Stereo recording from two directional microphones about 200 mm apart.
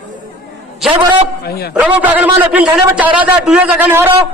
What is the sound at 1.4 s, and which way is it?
Speech, 50° left (ahead or behind).